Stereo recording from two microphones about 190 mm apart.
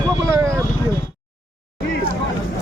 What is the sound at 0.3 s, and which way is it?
Vehicle, 15° right (ahead or behind).